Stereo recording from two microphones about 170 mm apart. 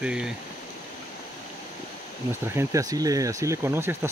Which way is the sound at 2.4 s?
15° right (ahead or behind).